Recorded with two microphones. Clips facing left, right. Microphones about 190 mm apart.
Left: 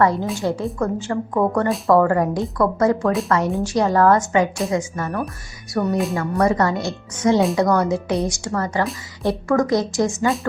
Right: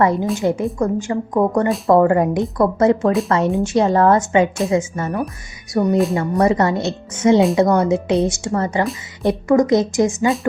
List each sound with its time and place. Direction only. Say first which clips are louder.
0.0 s a woman's voice: right 2 dB; 20° right (ahead or behind)